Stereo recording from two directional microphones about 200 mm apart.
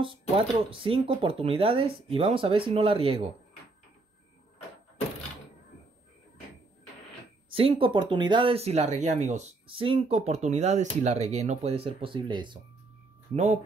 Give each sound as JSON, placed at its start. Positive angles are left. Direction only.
{"t": 0.7, "sound": "speech", "side_deg": -25}
{"t": 7.5, "sound": "speech", "side_deg": -30}
{"t": 13.3, "sound": "speech", "side_deg": -35}